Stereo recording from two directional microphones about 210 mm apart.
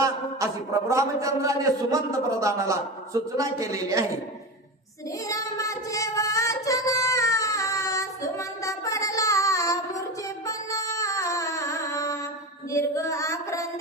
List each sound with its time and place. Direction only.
0.0 s a man's voice: 15° right (ahead or behind)
5.3 s female singing: 15° left (ahead or behind)
12.7 s child singing: 15° left (ahead or behind)